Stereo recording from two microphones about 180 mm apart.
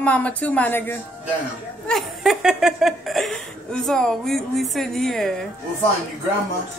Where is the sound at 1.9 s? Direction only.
Centre (ahead or behind).